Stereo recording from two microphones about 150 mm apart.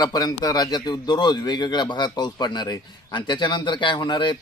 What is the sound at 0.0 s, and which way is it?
A man's voice, 25° left (ahead or behind).